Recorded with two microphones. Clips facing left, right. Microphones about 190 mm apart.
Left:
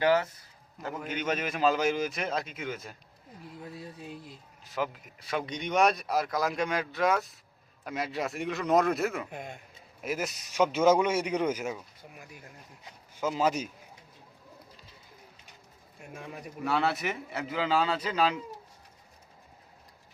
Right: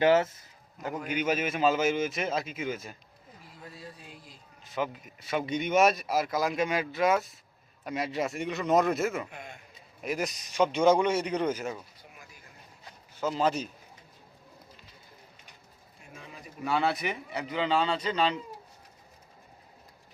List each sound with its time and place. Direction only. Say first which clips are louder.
0.0 s a man's voice: right 3 dB; 25° right (ahead or behind); by 2.9 s centre (ahead or behind)
3.9 s speech: left 7 dB; 20° left (ahead or behind)
4.6 s a man's voice: right 1 dB; centre (ahead or behind)
9.3 s a man's voice: left 4 dB; 45° left (ahead or behind)
10.0 s speech: right 1 dB; 5° left (ahead or behind)
13.1 s speech: even; 10° left (ahead or behind)
16.1 s a man's voice: left 5 dB; 60° left (ahead or behind)
16.6 s a man's voice: even; centre (ahead or behind)